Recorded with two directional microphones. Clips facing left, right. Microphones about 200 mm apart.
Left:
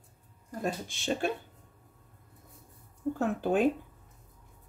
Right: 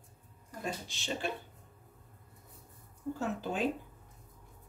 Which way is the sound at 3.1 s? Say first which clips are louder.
Left 7 dB; 55° left (ahead or behind).